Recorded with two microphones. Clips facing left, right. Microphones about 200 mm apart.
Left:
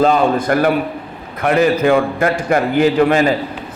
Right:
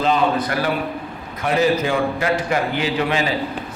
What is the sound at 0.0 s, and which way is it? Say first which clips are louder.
A man's voice: left 5 dB; 50° left (ahead or behind).